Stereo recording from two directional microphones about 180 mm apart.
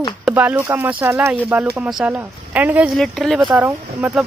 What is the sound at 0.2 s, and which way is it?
Speech, 10° right (ahead or behind).